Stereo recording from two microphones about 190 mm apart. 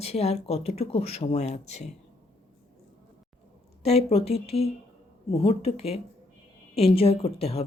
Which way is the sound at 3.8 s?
35° left (ahead or behind).